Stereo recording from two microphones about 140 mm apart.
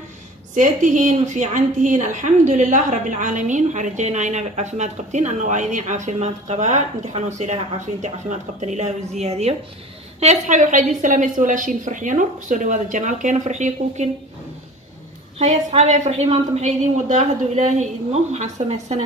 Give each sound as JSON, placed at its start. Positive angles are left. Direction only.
{"t": 0.6, "sound": "a woman's voice", "side_deg": -65}
{"t": 10.2, "sound": "a woman's voice", "side_deg": -60}
{"t": 15.3, "sound": "a woman's voice", "side_deg": -50}